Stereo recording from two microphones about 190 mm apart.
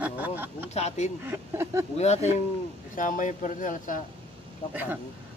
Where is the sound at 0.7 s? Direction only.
35° left (ahead or behind).